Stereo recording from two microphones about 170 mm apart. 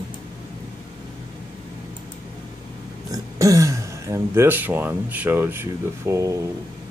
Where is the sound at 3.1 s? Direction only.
20° right (ahead or behind).